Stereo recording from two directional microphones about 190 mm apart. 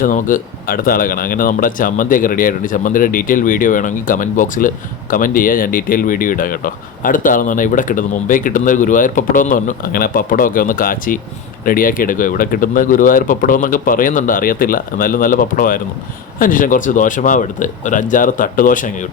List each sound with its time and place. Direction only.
0.0 s speech: 45° left (ahead or behind)